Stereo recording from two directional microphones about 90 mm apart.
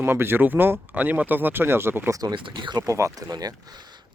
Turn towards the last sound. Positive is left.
turn(degrees=-40)  # may be behind; listen again after turning